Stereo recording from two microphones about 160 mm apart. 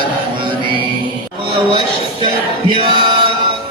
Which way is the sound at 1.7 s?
30° right (ahead or behind).